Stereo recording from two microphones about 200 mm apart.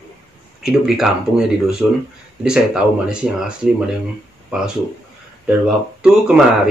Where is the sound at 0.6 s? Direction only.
Centre (ahead or behind).